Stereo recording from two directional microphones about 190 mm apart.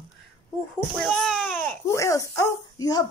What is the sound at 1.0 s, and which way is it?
Speech, 5° left (ahead or behind).